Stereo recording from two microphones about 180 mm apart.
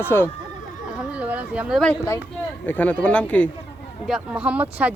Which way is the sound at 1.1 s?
10° right (ahead or behind).